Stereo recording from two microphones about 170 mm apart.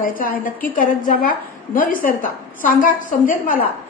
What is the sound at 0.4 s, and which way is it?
A woman's voice, 50° left (ahead or behind).